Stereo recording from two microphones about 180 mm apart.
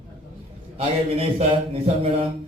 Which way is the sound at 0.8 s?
35° right (ahead or behind).